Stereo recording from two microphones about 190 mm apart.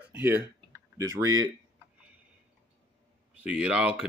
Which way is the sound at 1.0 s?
15° right (ahead or behind).